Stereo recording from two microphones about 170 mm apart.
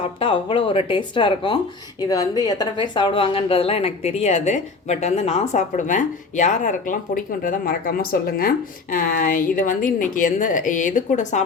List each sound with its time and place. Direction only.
0.0 s a woman's voice: 30° left (ahead or behind)